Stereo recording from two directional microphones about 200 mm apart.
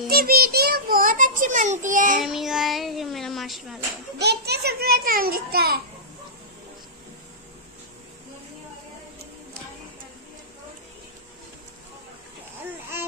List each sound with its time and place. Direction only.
0.1 s child singing: 50° right (ahead or behind)
2.2 s child singing: centre (ahead or behind)
4.2 s a child's voice: 55° right (ahead or behind)